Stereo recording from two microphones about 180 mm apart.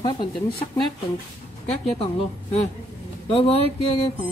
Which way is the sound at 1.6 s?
35° left (ahead or behind).